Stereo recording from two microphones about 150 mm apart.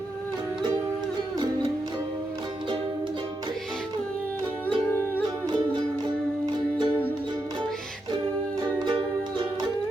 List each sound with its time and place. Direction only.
6.4 s music: 30° right (ahead or behind)
8.8 s music: 30° right (ahead or behind)